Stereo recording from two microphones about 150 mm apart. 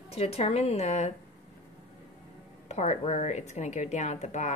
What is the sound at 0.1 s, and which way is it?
A woman's voice, 40° left (ahead or behind).